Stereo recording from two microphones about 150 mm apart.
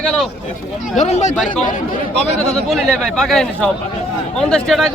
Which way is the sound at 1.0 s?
50° left (ahead or behind).